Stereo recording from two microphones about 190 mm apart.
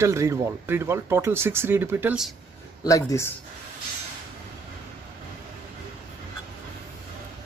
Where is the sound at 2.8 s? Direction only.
15° left (ahead or behind).